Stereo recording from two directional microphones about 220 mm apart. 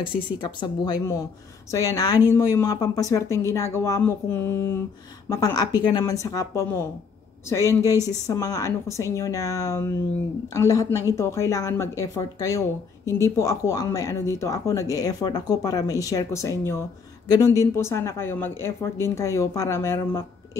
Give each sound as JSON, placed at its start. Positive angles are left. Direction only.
{"t": 0.0, "sound": "speech", "side_deg": 20}